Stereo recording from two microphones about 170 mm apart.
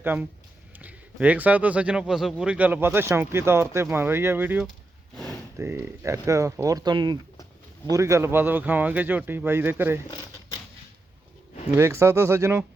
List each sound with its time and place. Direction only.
0.0 s speech: 10° right (ahead or behind)
5.1 s a sound: centre (ahead or behind)
5.5 s speech: 15° right (ahead or behind)
11.8 s speech: 15° right (ahead or behind)